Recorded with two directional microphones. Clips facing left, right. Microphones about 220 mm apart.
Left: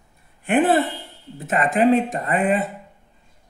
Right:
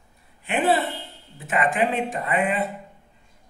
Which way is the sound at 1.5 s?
40° left (ahead or behind).